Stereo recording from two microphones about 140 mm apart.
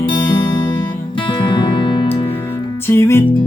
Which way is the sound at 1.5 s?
35° left (ahead or behind).